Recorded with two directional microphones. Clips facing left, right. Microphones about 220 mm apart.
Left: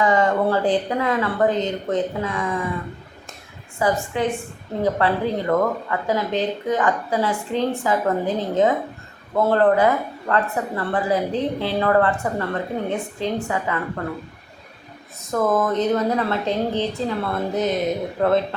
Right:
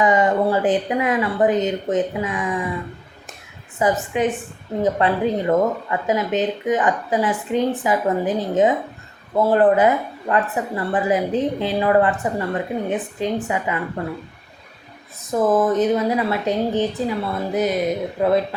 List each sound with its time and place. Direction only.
0.0 s speech: 20° right (ahead or behind)
3.8 s a woman's voice: 20° right (ahead or behind)
15.3 s speech: 15° right (ahead or behind)